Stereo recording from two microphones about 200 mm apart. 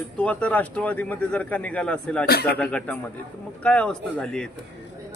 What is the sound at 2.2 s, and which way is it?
Speech, 50° left (ahead or behind).